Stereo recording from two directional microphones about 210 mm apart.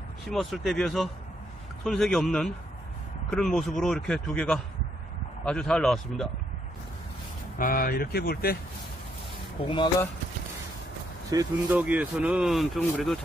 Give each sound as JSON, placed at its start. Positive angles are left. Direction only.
{"t": 0.3, "sound": "speech", "side_deg": 0}
{"t": 7.5, "sound": "speech", "side_deg": 40}
{"t": 9.7, "sound": "speech", "side_deg": 20}
{"t": 11.2, "sound": "speech", "side_deg": -10}